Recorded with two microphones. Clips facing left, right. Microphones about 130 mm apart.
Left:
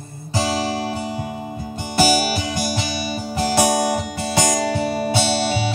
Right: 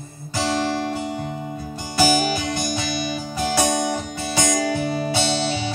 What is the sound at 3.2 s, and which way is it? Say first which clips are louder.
Music: left 5 dB; 60° left (ahead or behind).